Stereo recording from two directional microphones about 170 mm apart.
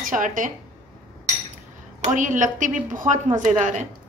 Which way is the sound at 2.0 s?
50° right (ahead or behind).